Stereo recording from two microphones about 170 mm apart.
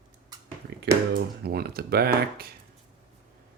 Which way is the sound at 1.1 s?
65° right (ahead or behind).